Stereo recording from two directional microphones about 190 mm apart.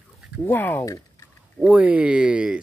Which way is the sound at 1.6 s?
5° right (ahead or behind).